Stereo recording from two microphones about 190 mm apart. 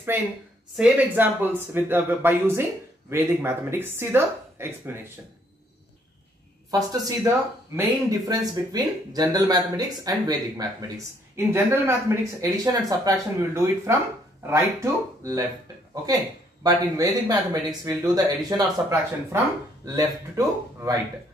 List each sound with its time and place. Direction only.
0.7 s speech: 5° right (ahead or behind)
6.7 s speech: 20° right (ahead or behind)
16.6 s speech: 20° right (ahead or behind)